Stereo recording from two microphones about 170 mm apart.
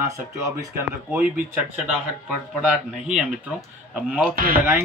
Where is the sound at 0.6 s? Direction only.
10° right (ahead or behind).